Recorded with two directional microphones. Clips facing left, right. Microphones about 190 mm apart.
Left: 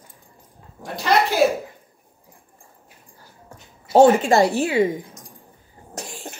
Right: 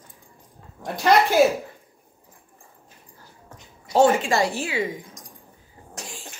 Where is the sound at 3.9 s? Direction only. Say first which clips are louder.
Left 5 dB; 55° left (ahead or behind).